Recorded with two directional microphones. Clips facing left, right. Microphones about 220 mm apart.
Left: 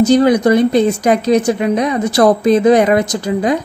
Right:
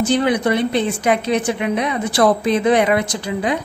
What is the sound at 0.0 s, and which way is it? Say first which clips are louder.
A woman's voice: left 7 dB; 40° left (ahead or behind).